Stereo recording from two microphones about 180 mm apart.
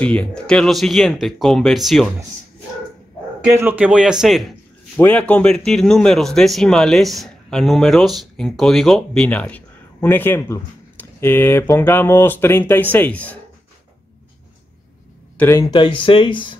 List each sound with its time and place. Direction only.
0.0 s a man's voice: 5° left (ahead or behind)
3.4 s a man's voice: 10° right (ahead or behind); by 13.4 s 10° left (ahead or behind)
15.3 s speech: 15° left (ahead or behind)
15.7 s speech: 30° left (ahead or behind)